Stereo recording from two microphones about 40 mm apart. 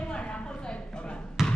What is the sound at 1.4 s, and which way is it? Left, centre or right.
Basketball bounce, centre.